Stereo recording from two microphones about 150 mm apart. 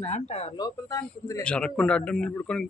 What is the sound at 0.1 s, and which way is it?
Speech, 45° left (ahead or behind).